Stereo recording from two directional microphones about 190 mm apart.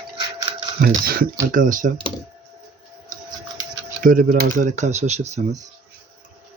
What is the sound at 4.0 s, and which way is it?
Speech, 45° right (ahead or behind).